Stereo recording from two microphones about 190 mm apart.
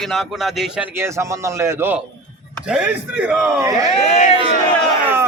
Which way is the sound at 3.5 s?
20° right (ahead or behind).